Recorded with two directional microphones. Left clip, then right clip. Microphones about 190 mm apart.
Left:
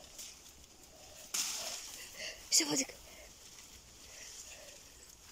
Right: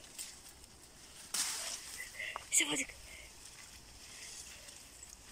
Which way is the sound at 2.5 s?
20° left (ahead or behind).